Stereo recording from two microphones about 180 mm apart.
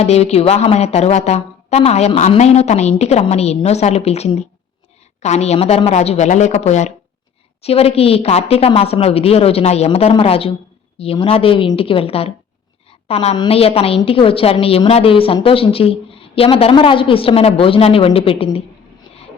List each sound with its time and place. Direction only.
0.0 s a woman's voice: 35° left (ahead or behind)